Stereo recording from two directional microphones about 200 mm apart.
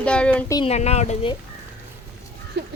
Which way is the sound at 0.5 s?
30° left (ahead or behind).